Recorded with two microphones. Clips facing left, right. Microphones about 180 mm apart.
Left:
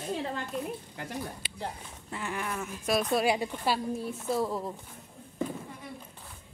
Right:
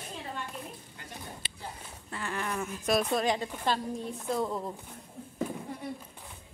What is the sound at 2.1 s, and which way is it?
Speech, 15° left (ahead or behind).